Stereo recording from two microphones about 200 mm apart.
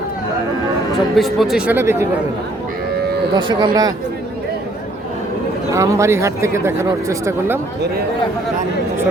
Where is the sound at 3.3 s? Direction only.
25° right (ahead or behind).